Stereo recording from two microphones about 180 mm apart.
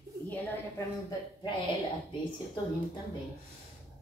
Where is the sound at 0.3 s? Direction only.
10° left (ahead or behind).